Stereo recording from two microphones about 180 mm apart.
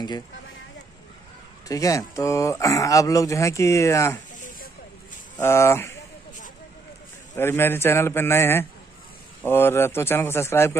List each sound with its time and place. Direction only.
1.7 s speech: 20° left (ahead or behind)
5.4 s speech: 15° left (ahead or behind)
7.3 s speech: 15° left (ahead or behind)